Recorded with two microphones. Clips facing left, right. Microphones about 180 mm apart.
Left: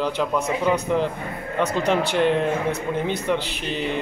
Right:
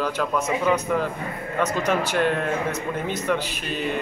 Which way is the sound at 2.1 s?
20° left (ahead or behind).